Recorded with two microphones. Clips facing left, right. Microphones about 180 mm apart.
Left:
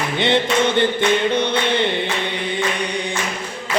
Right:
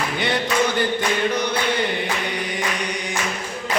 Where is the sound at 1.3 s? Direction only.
25° left (ahead or behind).